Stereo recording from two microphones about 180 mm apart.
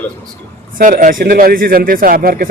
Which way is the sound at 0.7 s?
50° right (ahead or behind).